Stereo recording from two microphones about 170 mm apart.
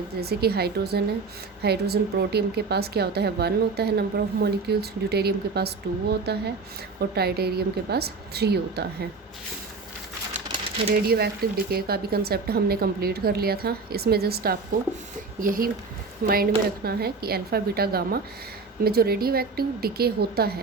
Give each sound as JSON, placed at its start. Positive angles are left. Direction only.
{"t": 0.2, "sound": "a woman's voice", "side_deg": -70}
{"t": 10.8, "sound": "speech", "side_deg": -65}